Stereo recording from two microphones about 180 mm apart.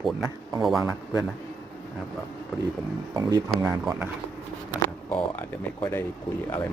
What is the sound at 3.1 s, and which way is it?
Speech, 20° right (ahead or behind).